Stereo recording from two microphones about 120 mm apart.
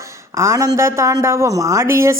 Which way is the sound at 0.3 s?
25° right (ahead or behind).